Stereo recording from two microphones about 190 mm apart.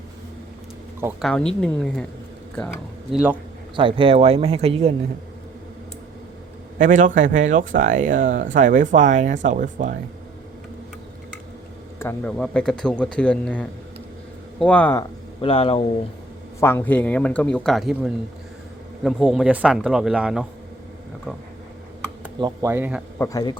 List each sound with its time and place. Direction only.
1.2 s a man's voice: 5° left (ahead or behind)
3.8 s speech: 25° right (ahead or behind)
6.7 s speech: 40° right (ahead or behind)
11.9 s a man's voice: 10° left (ahead or behind)
15.4 s speech: 30° left (ahead or behind)
16.6 s a man's voice: 10° left (ahead or behind); by 20.5 s 5° right (ahead or behind)
22.4 s speech: 25° right (ahead or behind)
22.7 s speech: 10° right (ahead or behind)
23.1 s speech: 15° left (ahead or behind)